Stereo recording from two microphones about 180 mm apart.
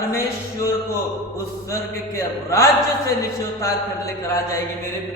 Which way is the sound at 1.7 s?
15° left (ahead or behind).